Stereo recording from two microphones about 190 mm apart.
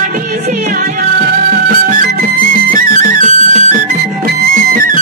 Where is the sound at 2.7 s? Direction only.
45° right (ahead or behind).